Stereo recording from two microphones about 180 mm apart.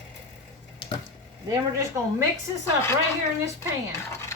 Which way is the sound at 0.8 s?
25° left (ahead or behind).